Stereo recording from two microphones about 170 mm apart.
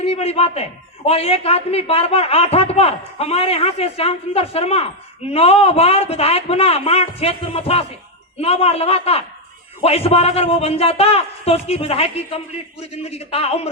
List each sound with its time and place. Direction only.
0.0 s a man's voice: 35° left (ahead or behind)